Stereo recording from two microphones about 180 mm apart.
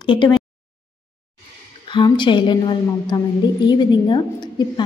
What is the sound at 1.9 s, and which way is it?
A woman's voice, 25° left (ahead or behind).